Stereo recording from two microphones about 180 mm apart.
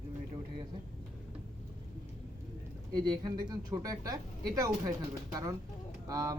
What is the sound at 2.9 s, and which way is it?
Speech, 20° right (ahead or behind).